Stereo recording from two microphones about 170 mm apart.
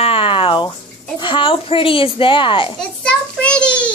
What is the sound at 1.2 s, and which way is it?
A woman's voice, 30° left (ahead or behind).